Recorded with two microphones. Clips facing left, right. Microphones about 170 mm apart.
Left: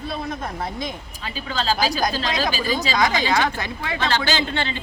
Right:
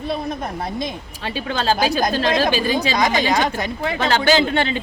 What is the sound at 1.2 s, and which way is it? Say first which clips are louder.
A woman's voice: right 4 dB; 60° right (ahead or behind).